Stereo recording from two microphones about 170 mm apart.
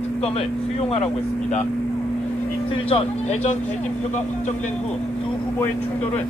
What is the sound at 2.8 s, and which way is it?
Speech, 35° left (ahead or behind).